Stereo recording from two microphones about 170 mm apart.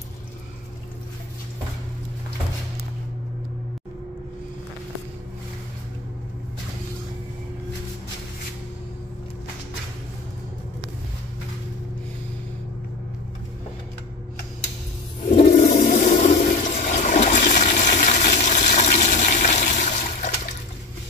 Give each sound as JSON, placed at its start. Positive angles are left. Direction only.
{"t": 15.5, "sound": "toilet flush", "side_deg": 45}